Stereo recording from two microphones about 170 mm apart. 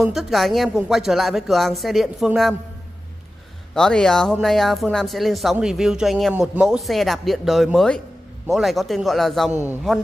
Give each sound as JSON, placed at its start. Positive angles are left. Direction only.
{"t": 0.0, "sound": "speech", "side_deg": 0}
{"t": 3.7, "sound": "speech", "side_deg": 5}
{"t": 9.6, "sound": "a man's voice", "side_deg": -10}